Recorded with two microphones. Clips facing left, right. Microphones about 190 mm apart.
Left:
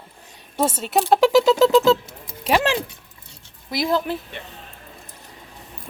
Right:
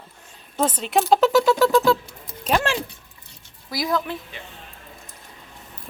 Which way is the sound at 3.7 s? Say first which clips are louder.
Left 3 dB; 25° left (ahead or behind).